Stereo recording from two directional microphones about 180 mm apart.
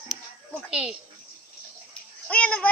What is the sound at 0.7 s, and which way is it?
Speech, 5° right (ahead or behind).